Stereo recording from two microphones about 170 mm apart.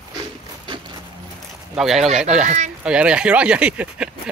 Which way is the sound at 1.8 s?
Centre (ahead or behind).